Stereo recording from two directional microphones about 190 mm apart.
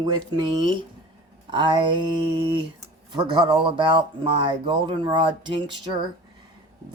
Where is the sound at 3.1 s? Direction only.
25° right (ahead or behind).